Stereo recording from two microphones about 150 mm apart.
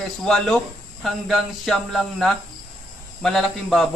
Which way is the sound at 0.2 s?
5° left (ahead or behind).